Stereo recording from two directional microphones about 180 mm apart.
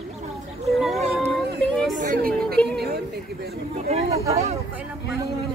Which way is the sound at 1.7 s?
Centre (ahead or behind).